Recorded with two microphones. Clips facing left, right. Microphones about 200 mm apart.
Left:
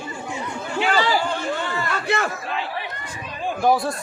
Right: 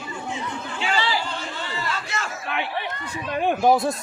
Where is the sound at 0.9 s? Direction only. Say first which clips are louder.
Left 3 dB; 45° left (ahead or behind); by 2.3 s 60° left (ahead or behind).